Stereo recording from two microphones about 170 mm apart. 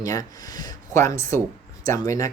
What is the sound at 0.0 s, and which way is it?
Speech, 20° left (ahead or behind).